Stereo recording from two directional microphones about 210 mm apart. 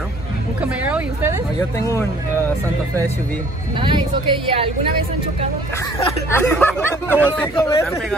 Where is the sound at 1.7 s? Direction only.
15° left (ahead or behind).